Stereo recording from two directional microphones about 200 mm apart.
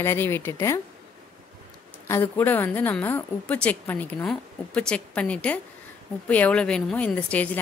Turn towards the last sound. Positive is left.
turn(degrees=5)  # may be behind; listen again after turning